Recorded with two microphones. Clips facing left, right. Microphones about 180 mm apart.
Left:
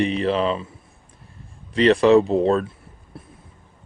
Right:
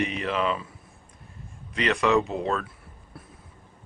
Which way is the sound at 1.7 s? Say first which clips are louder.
Left 9 dB; 30° left (ahead or behind).